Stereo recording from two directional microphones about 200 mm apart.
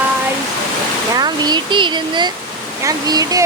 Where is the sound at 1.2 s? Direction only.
20° right (ahead or behind).